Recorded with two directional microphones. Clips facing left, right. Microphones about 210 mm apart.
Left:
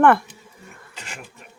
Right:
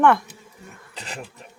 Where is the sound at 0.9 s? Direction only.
35° right (ahead or behind).